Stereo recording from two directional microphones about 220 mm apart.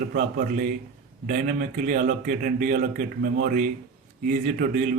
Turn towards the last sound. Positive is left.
turn(degrees=-35)  # may be behind; listen again after turning